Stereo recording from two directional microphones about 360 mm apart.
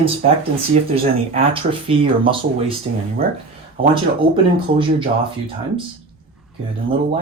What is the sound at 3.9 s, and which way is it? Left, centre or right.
Speech, centre.